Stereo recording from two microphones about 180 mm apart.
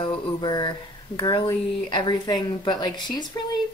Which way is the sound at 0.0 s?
25° left (ahead or behind).